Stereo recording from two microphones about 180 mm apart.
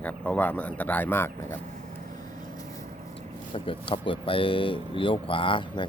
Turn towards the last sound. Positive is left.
turn(degrees=25)  # may be behind; listen again after turning